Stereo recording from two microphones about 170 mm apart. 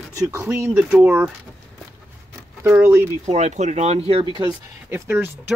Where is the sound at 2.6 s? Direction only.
10° right (ahead or behind).